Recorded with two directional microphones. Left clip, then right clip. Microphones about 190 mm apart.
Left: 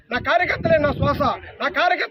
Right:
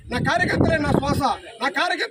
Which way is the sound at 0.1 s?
25° left (ahead or behind).